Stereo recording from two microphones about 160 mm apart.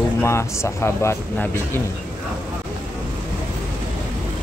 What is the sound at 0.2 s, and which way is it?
Speech, 15° left (ahead or behind).